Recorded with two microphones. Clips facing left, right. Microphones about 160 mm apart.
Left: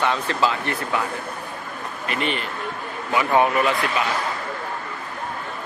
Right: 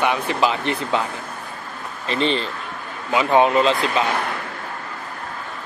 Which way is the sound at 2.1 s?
30° right (ahead or behind).